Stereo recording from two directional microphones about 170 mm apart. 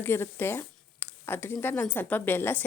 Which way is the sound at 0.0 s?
15° left (ahead or behind).